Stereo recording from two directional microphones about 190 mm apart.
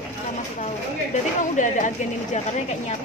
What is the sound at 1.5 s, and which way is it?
Speech, 40° left (ahead or behind).